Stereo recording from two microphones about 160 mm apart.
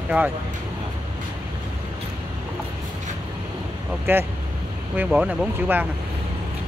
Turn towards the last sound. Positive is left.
turn(degrees=-10)  # may be behind; listen again after turning